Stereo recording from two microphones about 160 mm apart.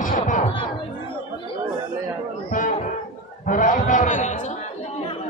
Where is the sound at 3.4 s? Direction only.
55° left (ahead or behind).